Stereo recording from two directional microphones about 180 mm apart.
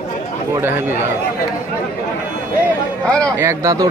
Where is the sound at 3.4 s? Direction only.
15° right (ahead or behind).